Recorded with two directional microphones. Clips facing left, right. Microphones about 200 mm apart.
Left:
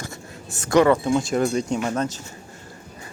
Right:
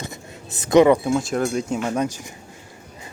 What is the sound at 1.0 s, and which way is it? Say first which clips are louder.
Speech: left 1 dB; centre (ahead or behind).